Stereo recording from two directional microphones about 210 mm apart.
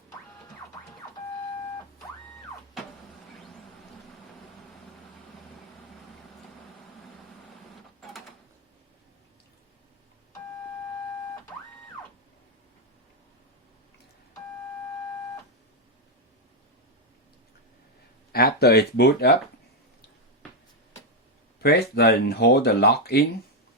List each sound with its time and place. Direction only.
18.3 s speech: 45° left (ahead or behind)
21.6 s speech: 50° left (ahead or behind)